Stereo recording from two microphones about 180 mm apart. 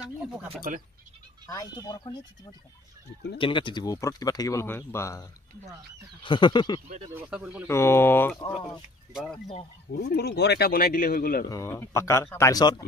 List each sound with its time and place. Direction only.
1.5 s speech: 20° left (ahead or behind)
3.3 s speech: 30° left (ahead or behind)
7.2 s speech: 5° right (ahead or behind)
7.6 s speech: 15° left (ahead or behind)
8.4 s speech: 25° left (ahead or behind)
10.0 s speech: 60° left (ahead or behind)
11.4 s speech: 15° left (ahead or behind)